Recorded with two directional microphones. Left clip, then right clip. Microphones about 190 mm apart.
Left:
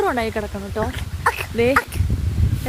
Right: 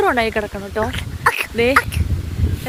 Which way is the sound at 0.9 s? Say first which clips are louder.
Right 4 dB; 25° left (ahead or behind).